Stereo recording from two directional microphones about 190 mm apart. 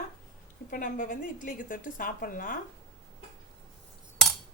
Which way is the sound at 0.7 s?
45° left (ahead or behind).